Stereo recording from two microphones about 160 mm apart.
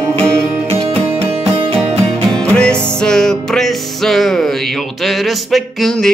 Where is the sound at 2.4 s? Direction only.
5° left (ahead or behind).